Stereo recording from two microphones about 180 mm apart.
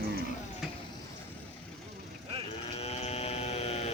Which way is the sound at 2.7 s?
35° left (ahead or behind).